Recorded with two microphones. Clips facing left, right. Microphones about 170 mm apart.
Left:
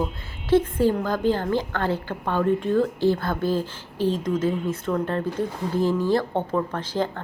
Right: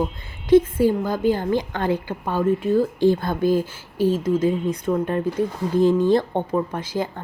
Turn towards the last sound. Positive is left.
turn(degrees=-10)  # may be behind; listen again after turning